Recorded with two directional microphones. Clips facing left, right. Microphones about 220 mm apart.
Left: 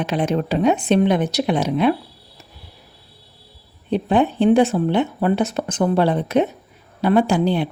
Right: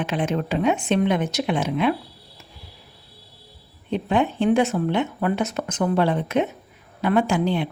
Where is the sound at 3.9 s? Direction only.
35° left (ahead or behind).